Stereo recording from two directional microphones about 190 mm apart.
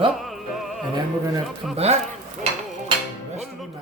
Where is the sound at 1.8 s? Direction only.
35° right (ahead or behind).